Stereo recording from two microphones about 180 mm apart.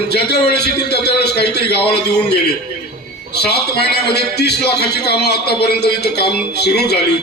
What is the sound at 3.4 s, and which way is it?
A man's voice, 65° left (ahead or behind).